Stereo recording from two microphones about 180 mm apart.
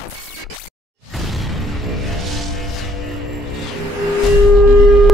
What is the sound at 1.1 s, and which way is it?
Music, centre (ahead or behind).